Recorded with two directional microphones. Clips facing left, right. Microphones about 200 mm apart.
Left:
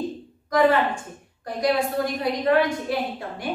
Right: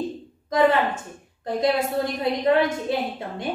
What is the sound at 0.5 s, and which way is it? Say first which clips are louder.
A woman's voice: even; 20° right (ahead or behind).